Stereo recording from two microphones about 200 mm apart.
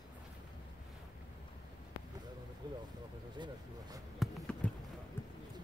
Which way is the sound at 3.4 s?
20° right (ahead or behind).